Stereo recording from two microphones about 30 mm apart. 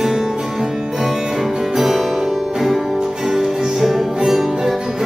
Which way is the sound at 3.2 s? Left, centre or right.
Centre.